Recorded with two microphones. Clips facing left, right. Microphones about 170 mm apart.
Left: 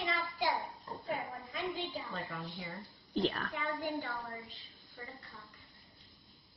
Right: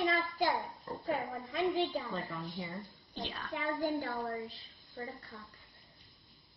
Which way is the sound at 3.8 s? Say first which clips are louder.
Right 4 dB; 35° right (ahead or behind).